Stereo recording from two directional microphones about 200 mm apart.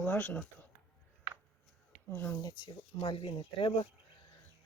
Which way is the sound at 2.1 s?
10° left (ahead or behind).